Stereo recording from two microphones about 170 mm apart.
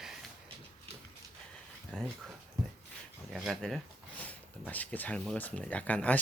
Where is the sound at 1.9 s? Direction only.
5° left (ahead or behind).